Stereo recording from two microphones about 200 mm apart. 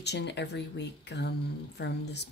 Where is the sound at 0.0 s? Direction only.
60° left (ahead or behind).